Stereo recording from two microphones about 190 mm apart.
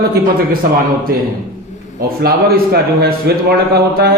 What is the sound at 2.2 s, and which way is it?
Speech, 50° right (ahead or behind).